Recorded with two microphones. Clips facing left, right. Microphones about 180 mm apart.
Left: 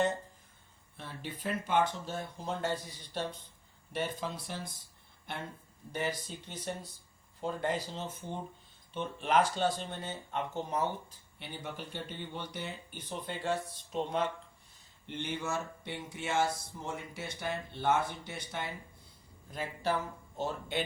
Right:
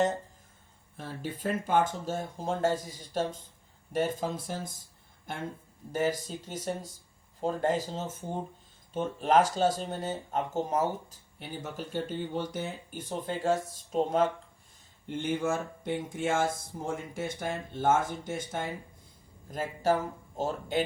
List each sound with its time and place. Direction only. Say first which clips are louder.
0.9 s speech: right 5 dB; 45° right (ahead or behind)
19.8 s speech: right 6 dB; 45° right (ahead or behind)